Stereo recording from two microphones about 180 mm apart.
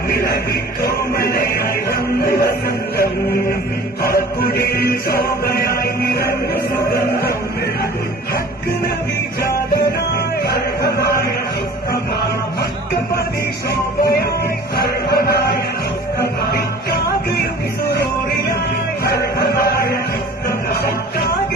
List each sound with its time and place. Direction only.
1.3 s music: 60° left (ahead or behind)
4.1 s music: 60° left (ahead or behind)
10.5 s music: 65° left (ahead or behind)
14.8 s music: 60° left (ahead or behind)